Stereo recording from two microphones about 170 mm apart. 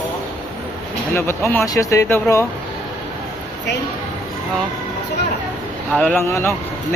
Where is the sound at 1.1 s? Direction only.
15° left (ahead or behind).